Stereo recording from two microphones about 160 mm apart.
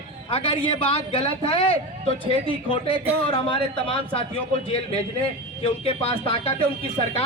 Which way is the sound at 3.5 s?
30° left (ahead or behind).